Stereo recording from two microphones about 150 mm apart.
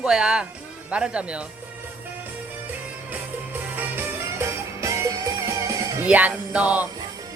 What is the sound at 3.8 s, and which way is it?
Music, 15° right (ahead or behind).